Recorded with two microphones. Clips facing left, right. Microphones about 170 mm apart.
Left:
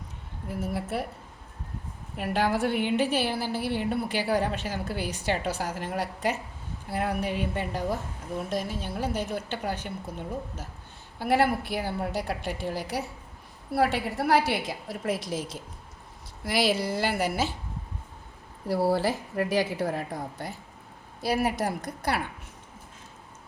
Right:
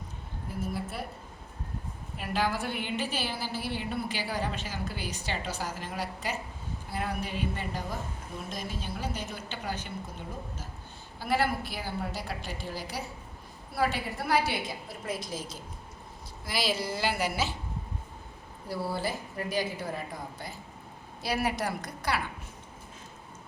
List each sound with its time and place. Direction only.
0.6 s a sound: 75° left (ahead or behind)
2.1 s a woman's voice: 60° left (ahead or behind)
11.2 s a woman's voice: 65° left (ahead or behind)
18.7 s a woman's voice: 80° left
21.2 s a woman's voice: 50° left (ahead or behind)